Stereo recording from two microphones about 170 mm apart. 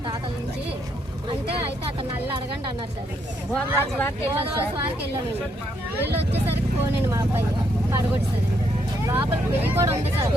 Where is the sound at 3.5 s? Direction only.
10° left (ahead or behind).